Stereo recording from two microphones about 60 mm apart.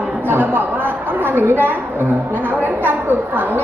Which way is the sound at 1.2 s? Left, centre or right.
Right.